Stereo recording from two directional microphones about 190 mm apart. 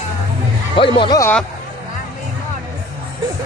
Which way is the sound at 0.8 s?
25° left (ahead or behind).